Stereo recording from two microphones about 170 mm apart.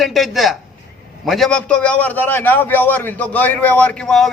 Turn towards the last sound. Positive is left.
turn(degrees=0)  # may be behind; listen again after turning